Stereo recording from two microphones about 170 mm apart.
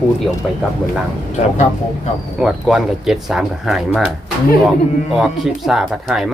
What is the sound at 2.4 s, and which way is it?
Speech, 5° right (ahead or behind).